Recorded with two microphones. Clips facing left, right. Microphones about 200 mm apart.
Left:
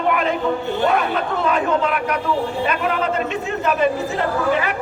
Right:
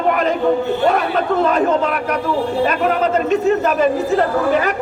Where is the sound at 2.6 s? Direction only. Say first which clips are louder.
Right 4 dB; 40° right (ahead or behind).